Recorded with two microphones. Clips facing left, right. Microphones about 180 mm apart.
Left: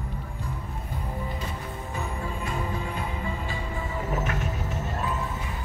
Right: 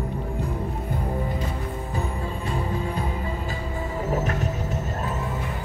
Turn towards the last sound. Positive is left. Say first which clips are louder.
# right 4 dB
turn(degrees=-35)  # may be behind; listen again after turning